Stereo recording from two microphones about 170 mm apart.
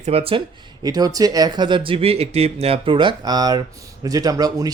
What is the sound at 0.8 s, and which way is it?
Speech, 20° right (ahead or behind).